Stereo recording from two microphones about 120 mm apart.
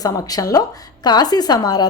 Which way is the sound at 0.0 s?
30° left (ahead or behind).